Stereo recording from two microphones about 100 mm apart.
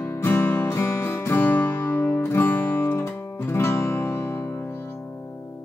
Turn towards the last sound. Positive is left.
turn(degrees=25)  # may be behind; listen again after turning